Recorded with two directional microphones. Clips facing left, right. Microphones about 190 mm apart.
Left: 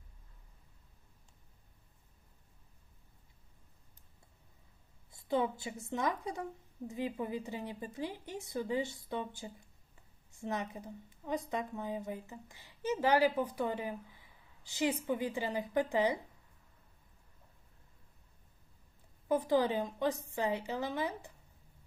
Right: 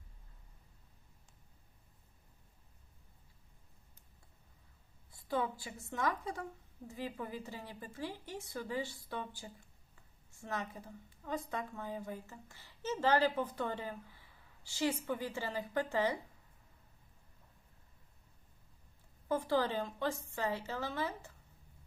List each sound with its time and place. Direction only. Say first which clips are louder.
5.1 s a woman's voice: left 4 dB; 20° left (ahead or behind)
19.3 s a woman's voice: left 3 dB; 15° left (ahead or behind)